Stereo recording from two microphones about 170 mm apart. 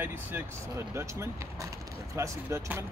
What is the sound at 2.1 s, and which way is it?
Speech, 15° right (ahead or behind).